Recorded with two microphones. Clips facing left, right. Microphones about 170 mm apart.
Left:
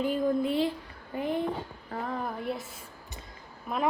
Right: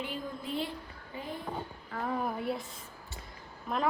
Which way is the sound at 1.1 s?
65° left (ahead or behind).